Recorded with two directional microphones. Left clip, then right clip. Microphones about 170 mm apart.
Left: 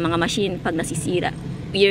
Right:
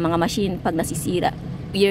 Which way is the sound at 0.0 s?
15° right (ahead or behind).